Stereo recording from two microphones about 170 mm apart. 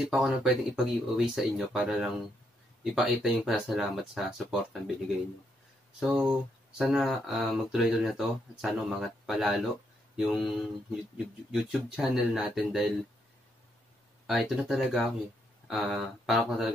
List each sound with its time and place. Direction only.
0.0 s speech: 5° right (ahead or behind)
5.9 s speech: 5° right (ahead or behind)
14.2 s speech: 5° right (ahead or behind)